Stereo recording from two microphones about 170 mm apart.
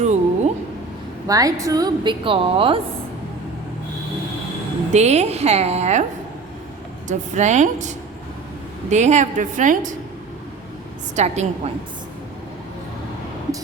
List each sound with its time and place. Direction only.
0.0 s a sound: 40° right (ahead or behind)
1.3 s a woman's voice: 20° right (ahead or behind)
4.9 s a woman's voice: 40° right (ahead or behind)
7.1 s a woman's voice: 45° right (ahead or behind)
11.1 s a woman's voice: 40° right (ahead or behind)